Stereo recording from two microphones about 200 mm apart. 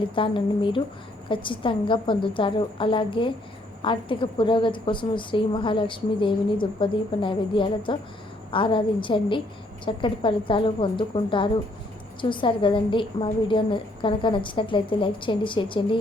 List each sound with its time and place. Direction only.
0.1 s a woman's voice: 25° left (ahead or behind)